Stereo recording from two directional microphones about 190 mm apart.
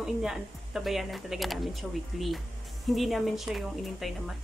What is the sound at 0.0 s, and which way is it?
Speech, 5° right (ahead or behind).